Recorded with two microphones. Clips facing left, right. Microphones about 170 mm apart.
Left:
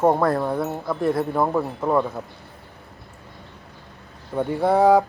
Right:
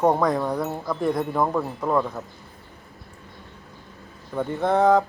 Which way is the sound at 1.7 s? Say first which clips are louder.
Left 2 dB; 15° left (ahead or behind).